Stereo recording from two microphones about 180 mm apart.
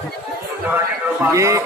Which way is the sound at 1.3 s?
15° right (ahead or behind).